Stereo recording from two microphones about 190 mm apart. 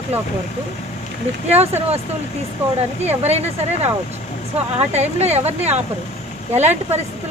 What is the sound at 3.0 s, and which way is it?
Speech, 35° right (ahead or behind).